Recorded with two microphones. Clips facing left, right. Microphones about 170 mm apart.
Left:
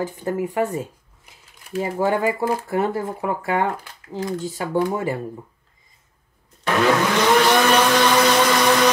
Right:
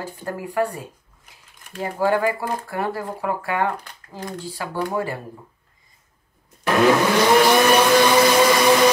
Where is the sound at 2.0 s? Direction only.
20° left (ahead or behind).